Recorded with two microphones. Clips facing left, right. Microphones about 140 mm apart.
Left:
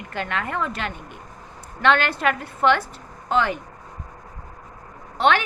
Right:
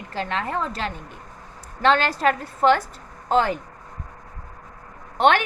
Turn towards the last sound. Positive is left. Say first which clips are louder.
# right 2 dB
turn(degrees=-50)  # may be behind; listen again after turning